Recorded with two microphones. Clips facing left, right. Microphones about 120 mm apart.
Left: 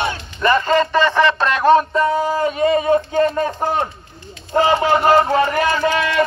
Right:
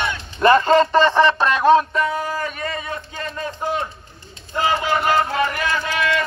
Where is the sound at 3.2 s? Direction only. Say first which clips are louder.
Left 11 dB; 45° left (ahead or behind).